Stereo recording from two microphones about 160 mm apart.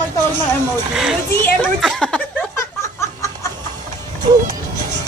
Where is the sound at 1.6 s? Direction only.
Centre (ahead or behind).